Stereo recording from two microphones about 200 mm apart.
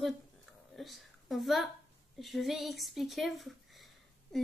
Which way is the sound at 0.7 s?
Centre (ahead or behind).